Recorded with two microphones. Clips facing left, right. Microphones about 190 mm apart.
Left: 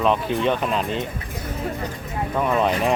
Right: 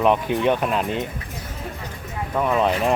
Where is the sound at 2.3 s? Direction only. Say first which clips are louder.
Right 1 dB; centre (ahead or behind).